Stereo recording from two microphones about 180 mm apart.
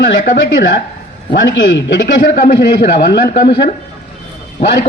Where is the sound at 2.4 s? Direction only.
50° left (ahead or behind).